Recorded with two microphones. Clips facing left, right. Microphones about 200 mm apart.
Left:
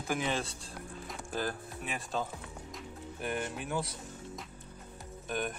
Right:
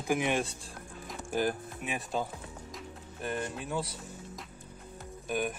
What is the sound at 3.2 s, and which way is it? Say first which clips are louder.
Speech: right 1 dB; centre (ahead or behind).